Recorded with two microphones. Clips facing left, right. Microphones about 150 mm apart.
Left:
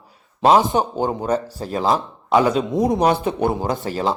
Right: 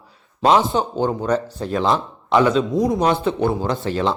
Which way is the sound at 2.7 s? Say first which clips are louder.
Even; 20° left (ahead or behind).